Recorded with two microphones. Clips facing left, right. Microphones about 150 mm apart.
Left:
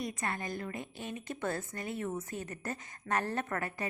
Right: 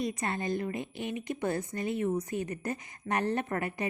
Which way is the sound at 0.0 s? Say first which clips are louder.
Right 5 dB; 20° right (ahead or behind).